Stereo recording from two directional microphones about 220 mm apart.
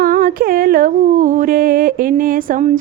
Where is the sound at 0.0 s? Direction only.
40° right (ahead or behind).